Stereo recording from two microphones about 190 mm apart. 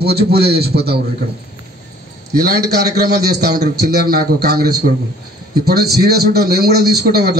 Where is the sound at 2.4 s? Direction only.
55° right (ahead or behind).